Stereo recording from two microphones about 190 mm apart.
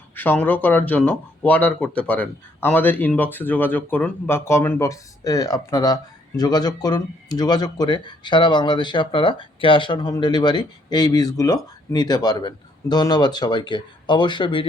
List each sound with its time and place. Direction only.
0.2 s speech: 10° left (ahead or behind); by 14.7 s 25° left (ahead or behind)